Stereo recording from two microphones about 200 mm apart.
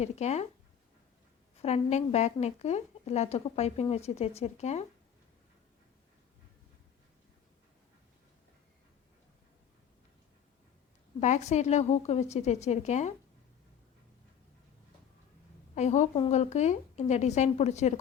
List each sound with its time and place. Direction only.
0.0 s a woman's voice: 35° left (ahead or behind)
1.6 s a woman's voice: 35° left (ahead or behind)
11.2 s a woman's voice: 35° left (ahead or behind)
15.7 s a woman's voice: 35° left (ahead or behind)